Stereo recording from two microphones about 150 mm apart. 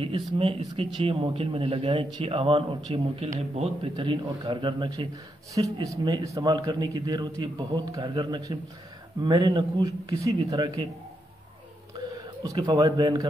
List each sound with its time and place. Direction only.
0.0 s a man's voice: 35° right (ahead or behind)
3.9 s a man's voice: 35° right (ahead or behind)
5.5 s a man's voice: 20° right (ahead or behind)
12.4 s a man's voice: 25° right (ahead or behind)